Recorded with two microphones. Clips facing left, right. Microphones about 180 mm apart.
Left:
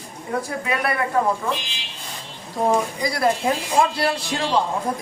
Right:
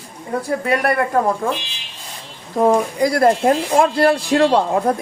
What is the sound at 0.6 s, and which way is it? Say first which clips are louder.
Speech: right 7 dB; 40° right (ahead or behind).